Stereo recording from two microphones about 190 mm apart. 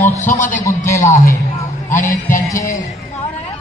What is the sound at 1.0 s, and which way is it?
Speech, 40° left (ahead or behind).